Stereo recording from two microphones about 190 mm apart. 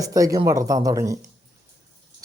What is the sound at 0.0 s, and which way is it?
Speech, 15° right (ahead or behind).